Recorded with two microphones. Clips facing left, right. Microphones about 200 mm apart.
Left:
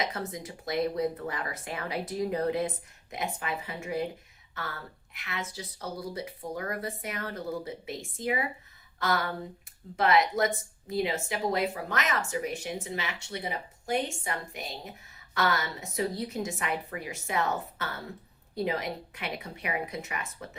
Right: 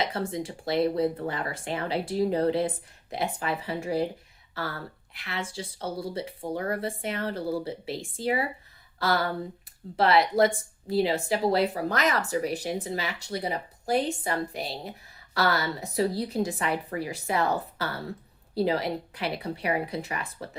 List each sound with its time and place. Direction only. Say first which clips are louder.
0.0 s speech: right 4 dB; 30° right (ahead or behind)